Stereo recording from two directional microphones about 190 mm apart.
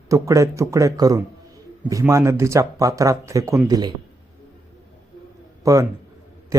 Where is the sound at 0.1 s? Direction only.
15° right (ahead or behind).